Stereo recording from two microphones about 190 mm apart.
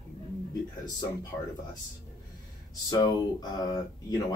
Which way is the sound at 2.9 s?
20° left (ahead or behind).